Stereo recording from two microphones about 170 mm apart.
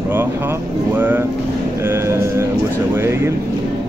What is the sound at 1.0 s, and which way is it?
Speech, 10° right (ahead or behind).